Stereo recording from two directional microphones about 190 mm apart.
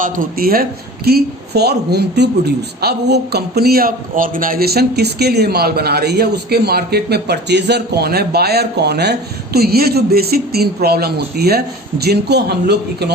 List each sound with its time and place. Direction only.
0.0 s speech: 50° right (ahead or behind)